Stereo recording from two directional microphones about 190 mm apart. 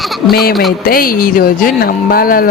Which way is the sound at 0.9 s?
50° left (ahead or behind).